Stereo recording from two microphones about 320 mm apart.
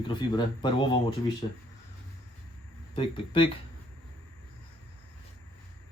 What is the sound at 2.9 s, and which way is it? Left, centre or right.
Speech, centre.